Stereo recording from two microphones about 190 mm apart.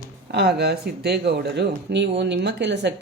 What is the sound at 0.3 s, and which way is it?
Speech, 60° right (ahead or behind).